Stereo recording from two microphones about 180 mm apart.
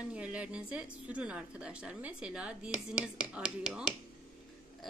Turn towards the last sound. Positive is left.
turn(degrees=-5)  # may be behind; listen again after turning